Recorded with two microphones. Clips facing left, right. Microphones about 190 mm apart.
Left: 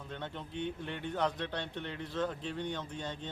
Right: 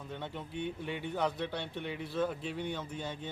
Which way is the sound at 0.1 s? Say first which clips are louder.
Right 1 dB; 10° right (ahead or behind).